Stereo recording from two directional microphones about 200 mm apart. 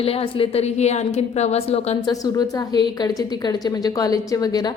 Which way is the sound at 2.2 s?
20° left (ahead or behind).